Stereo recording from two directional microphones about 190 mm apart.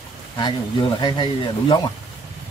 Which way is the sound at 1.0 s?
25° left (ahead or behind).